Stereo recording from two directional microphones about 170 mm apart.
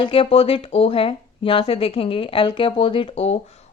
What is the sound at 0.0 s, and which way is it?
Speech, 30° left (ahead or behind).